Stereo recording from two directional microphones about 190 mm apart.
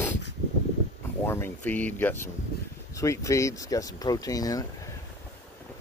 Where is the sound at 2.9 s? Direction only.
15° left (ahead or behind).